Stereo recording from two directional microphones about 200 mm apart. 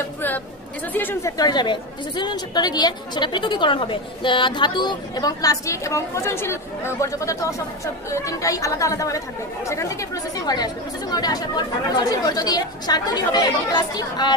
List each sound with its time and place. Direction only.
0.9 s a woman's voice: 10° left (ahead or behind)